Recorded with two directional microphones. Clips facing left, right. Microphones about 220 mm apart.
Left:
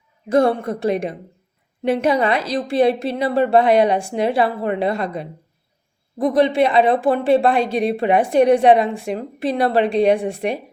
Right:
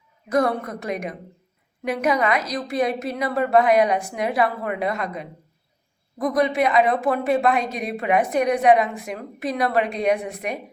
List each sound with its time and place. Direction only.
0.3 s a woman's voice: 30° left (ahead or behind)